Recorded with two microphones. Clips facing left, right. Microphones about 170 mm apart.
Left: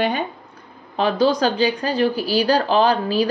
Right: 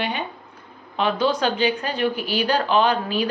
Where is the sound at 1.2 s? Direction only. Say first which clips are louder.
Left 4 dB; 35° left (ahead or behind).